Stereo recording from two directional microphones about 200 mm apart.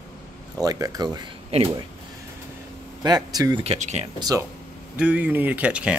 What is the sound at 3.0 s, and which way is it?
Speech, 20° right (ahead or behind).